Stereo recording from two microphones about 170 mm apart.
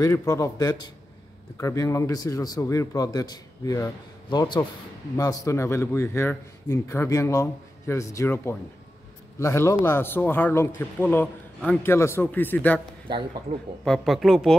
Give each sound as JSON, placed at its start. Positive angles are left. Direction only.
{"t": 0.0, "sound": "a man's voice", "side_deg": 20}
{"t": 13.5, "sound": "a man's voice", "side_deg": -45}
{"t": 13.8, "sound": "speech", "side_deg": 0}